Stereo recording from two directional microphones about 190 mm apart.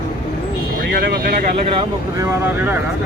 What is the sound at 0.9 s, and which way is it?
Vehicle, 50° right (ahead or behind).